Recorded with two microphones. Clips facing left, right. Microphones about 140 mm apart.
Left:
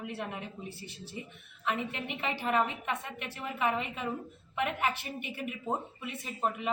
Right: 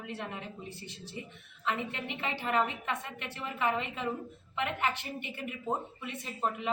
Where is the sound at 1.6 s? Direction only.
20° left (ahead or behind).